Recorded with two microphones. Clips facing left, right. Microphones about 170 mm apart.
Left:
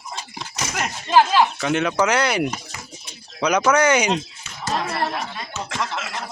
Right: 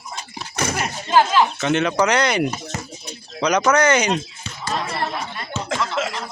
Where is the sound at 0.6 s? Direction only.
55° right (ahead or behind).